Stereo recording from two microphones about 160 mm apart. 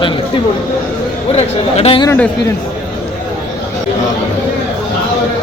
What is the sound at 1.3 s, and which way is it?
Speech, 40° left (ahead or behind).